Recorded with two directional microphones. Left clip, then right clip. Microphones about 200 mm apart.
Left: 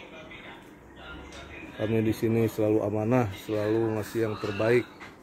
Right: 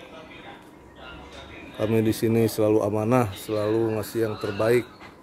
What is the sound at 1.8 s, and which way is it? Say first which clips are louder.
Speech: right 4 dB; 20° right (ahead or behind).